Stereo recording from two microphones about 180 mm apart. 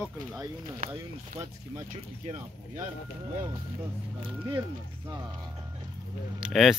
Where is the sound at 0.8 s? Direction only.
55° right (ahead or behind).